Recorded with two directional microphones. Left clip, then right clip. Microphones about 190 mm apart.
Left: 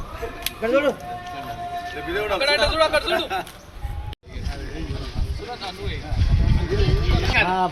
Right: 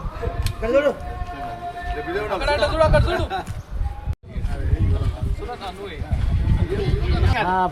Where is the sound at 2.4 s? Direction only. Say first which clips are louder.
Even; 10° right (ahead or behind).